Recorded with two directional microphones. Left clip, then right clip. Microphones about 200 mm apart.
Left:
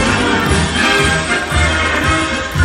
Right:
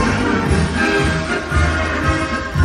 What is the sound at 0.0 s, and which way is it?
Music, 25° right (ahead or behind).